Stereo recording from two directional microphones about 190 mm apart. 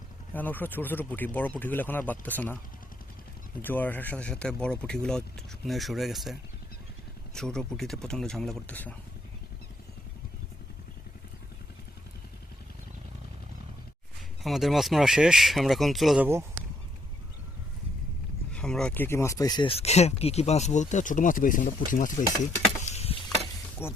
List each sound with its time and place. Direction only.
0.3 s speech: 10° left (ahead or behind)
3.6 s speech: 10° left (ahead or behind)
7.3 s speech: 5° left (ahead or behind)
14.4 s speech: centre (ahead or behind)
18.5 s speech: 5° left (ahead or behind); by 22.1 s 45° left (ahead or behind)
22.8 s a sound: 35° left (ahead or behind)
23.8 s speech: 15° left (ahead or behind)